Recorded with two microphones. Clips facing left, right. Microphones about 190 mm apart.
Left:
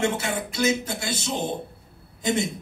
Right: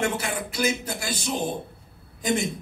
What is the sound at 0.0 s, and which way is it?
A man's voice, 25° left (ahead or behind).